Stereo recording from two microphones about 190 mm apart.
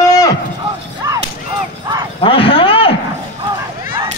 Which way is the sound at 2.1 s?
30° left (ahead or behind).